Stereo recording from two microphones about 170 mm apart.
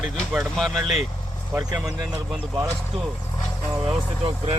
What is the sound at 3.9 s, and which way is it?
Speech, 30° right (ahead or behind).